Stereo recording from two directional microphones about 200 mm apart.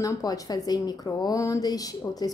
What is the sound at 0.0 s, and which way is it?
A woman's voice, 15° left (ahead or behind).